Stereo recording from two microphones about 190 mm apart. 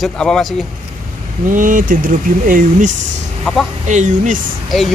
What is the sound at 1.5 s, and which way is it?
Speech, 45° right (ahead or behind).